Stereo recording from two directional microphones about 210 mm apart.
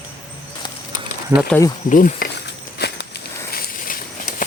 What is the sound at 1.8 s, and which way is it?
Speech, 40° left (ahead or behind).